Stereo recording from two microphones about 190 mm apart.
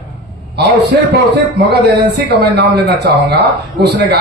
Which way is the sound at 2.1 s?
60° right (ahead or behind).